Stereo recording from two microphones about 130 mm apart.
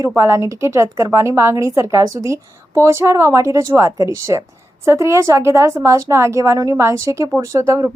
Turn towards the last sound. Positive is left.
turn(degrees=-25)  # may be behind; listen again after turning